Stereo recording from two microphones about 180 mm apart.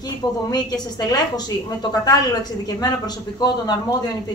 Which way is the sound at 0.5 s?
20° left (ahead or behind).